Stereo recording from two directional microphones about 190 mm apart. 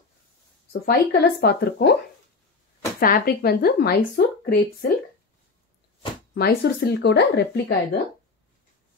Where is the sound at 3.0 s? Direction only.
50° left (ahead or behind).